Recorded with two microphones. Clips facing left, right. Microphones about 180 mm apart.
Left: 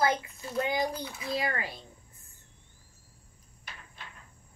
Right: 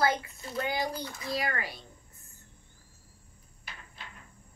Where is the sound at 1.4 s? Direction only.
20° left (ahead or behind).